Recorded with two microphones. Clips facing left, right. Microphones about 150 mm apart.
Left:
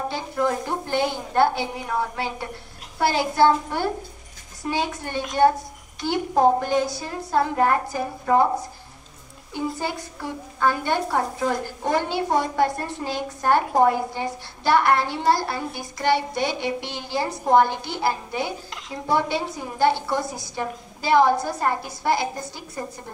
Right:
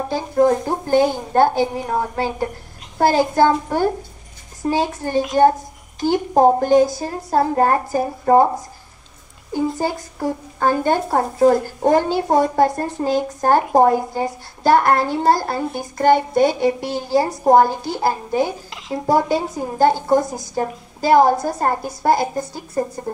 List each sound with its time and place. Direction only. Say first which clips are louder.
0.1 s a woman's voice: right 12 dB; 40° right (ahead or behind)
9.5 s a child's voice: right 7 dB; 40° right (ahead or behind)
18.7 s a sound: right 8 dB; centre (ahead or behind)
19.0 s a child's voice: right 5 dB; 40° right (ahead or behind)